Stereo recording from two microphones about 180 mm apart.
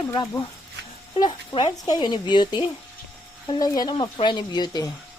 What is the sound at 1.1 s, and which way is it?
Speech, 30° left (ahead or behind).